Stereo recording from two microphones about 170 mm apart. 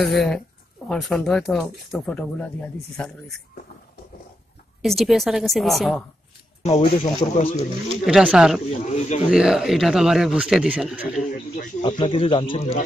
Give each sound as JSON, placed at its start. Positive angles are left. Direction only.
{"t": 0.0, "sound": "speech", "side_deg": 0}
{"t": 4.8, "sound": "speech", "side_deg": 0}
{"t": 6.6, "sound": "speech", "side_deg": 35}
{"t": 8.0, "sound": "speech", "side_deg": -5}
{"t": 8.6, "sound": "speech", "side_deg": 40}
{"t": 9.3, "sound": "speech", "side_deg": -5}
{"t": 11.8, "sound": "speech", "side_deg": 30}